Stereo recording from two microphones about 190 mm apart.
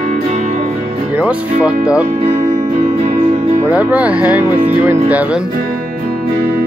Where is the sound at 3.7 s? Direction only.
5° right (ahead or behind).